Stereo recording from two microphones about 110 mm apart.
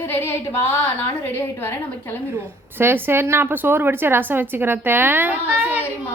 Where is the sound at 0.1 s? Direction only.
20° left (ahead or behind).